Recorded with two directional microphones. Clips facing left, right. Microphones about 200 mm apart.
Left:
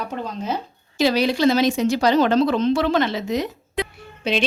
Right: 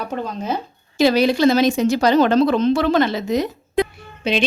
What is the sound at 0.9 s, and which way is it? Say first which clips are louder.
Speech: right 3 dB; 50° right (ahead or behind).